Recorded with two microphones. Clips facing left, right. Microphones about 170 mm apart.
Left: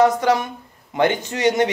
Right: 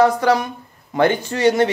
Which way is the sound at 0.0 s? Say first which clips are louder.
Right 1 dB; 20° left (ahead or behind).